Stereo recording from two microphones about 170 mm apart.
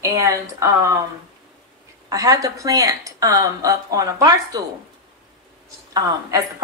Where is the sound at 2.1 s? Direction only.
20° right (ahead or behind).